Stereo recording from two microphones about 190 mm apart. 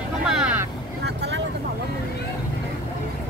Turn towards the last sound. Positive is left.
turn(degrees=-60)  # may be behind; listen again after turning